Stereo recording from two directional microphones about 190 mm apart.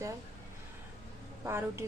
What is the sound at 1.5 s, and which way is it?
Speech, 15° right (ahead or behind).